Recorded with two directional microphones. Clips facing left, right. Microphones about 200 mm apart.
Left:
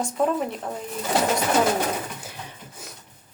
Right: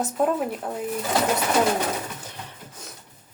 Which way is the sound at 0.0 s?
5° right (ahead or behind).